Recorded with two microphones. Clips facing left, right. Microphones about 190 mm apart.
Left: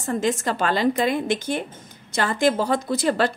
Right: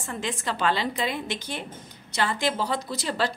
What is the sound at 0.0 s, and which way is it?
A woman's voice, 40° left (ahead or behind).